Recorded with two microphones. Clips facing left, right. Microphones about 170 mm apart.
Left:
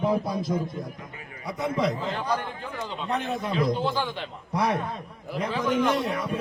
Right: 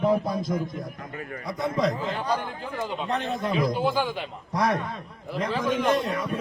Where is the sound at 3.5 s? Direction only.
10° right (ahead or behind).